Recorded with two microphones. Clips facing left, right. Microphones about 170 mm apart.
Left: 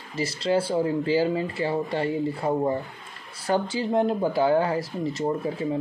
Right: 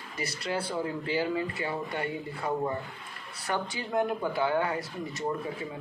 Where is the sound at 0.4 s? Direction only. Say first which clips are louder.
Left 9 dB; 30° left (ahead or behind).